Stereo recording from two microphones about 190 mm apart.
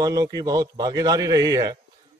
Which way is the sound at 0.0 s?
20° right (ahead or behind).